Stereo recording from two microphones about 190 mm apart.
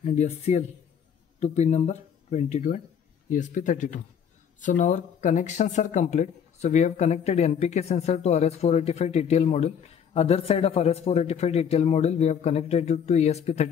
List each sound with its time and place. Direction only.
0.0 s speech: 35° left (ahead or behind)